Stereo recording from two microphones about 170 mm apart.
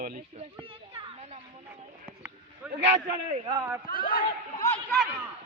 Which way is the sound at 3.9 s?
55° left (ahead or behind).